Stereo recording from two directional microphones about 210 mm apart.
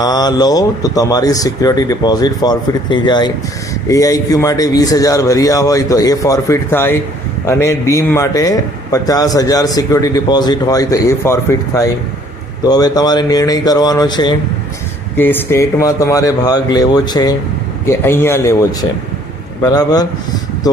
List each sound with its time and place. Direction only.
0.0 s a man's voice: 20° left (ahead or behind)
15.1 s a man's voice: 10° left (ahead or behind)